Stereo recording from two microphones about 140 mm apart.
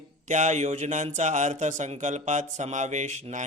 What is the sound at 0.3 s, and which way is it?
A man's voice, 55° right (ahead or behind).